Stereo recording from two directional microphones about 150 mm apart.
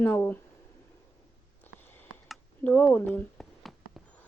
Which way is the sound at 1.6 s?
15° left (ahead or behind).